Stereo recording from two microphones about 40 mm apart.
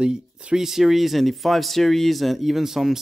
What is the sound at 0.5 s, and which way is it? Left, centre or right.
Speech, centre.